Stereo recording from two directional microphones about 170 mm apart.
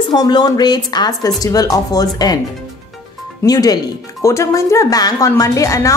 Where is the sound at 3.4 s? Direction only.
20° left (ahead or behind).